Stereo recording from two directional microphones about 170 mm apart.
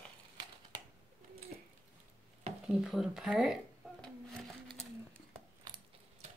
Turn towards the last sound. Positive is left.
turn(degrees=5)  # may be behind; listen again after turning